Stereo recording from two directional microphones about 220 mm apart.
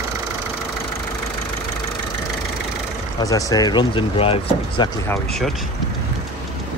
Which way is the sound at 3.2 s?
15° left (ahead or behind).